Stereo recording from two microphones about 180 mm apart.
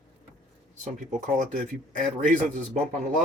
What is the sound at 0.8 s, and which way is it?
A man's voice, 45° right (ahead or behind).